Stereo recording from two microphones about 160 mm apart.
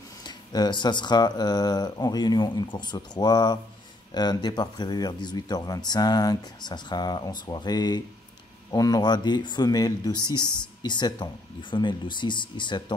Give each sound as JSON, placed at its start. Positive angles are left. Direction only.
{"t": 0.2, "sound": "speech", "side_deg": 25}